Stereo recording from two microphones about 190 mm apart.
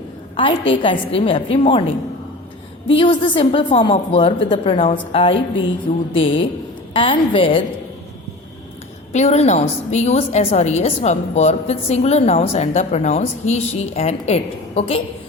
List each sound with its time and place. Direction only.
0.7 s a woman's voice: 25° left (ahead or behind)
2.9 s a woman's voice: 25° left (ahead or behind)
9.1 s a woman's voice: 35° left (ahead or behind)